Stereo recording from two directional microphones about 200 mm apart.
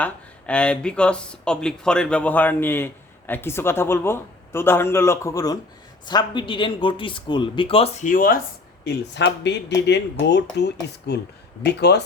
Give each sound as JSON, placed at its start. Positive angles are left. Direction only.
{"t": 0.0, "sound": "speech", "side_deg": 5}
{"t": 8.8, "sound": "speech", "side_deg": 55}